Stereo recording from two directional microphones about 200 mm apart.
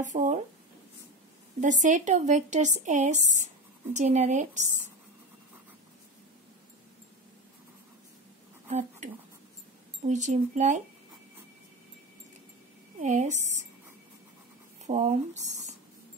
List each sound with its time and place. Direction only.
0.0 s a woman's voice: 40° right (ahead or behind)
1.6 s a woman's voice: 40° right (ahead or behind)
8.6 s a woman's voice: 35° right (ahead or behind)
13.0 s a woman's voice: 35° right (ahead or behind)
14.9 s speech: 35° right (ahead or behind)